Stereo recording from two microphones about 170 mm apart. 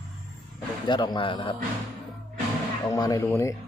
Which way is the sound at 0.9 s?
25° left (ahead or behind).